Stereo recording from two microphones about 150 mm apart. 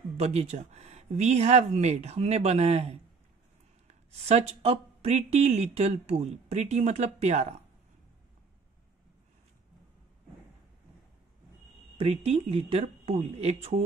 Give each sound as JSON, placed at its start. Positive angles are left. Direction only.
{"t": 0.2, "sound": "speech", "side_deg": -45}
{"t": 12.0, "sound": "speech", "side_deg": -40}